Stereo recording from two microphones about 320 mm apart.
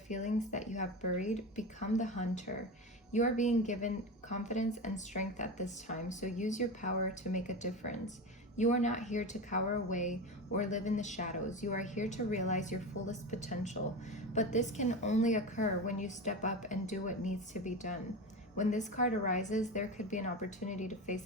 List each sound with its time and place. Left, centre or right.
0.1 s a woman's voice: left